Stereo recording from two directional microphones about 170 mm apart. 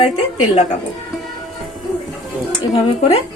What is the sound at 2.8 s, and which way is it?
Speech, 35° left (ahead or behind).